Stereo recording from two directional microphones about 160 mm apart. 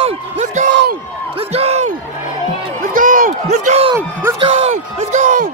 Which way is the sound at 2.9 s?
55° right (ahead or behind).